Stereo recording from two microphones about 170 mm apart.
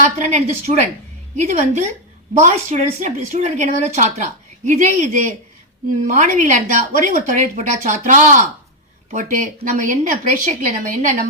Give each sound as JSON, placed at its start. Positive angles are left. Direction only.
{"t": 0.0, "sound": "speech", "side_deg": -45}